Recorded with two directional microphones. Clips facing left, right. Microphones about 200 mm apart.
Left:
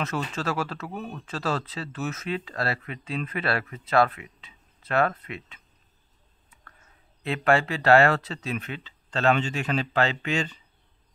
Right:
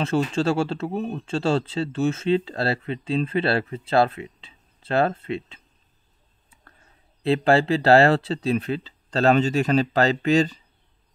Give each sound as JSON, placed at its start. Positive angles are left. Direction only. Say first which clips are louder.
{"t": 0.0, "sound": "speech", "louder": "right 8 dB", "side_deg": -30}
{"t": 7.2, "sound": "speech", "louder": "right 5 dB", "side_deg": -30}